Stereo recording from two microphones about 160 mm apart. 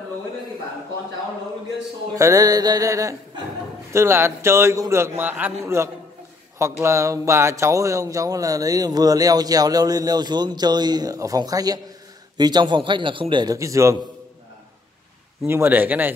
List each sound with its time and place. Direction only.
2.1 s a man's voice: 20° right (ahead or behind)
15.4 s a man's voice: 15° right (ahead or behind)